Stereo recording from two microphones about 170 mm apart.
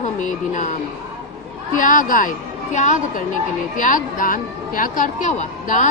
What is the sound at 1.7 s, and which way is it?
A woman's voice, 50° left (ahead or behind).